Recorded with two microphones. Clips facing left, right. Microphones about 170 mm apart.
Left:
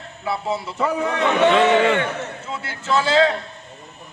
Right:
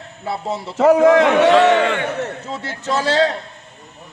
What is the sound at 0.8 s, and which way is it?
Speech, 90° right.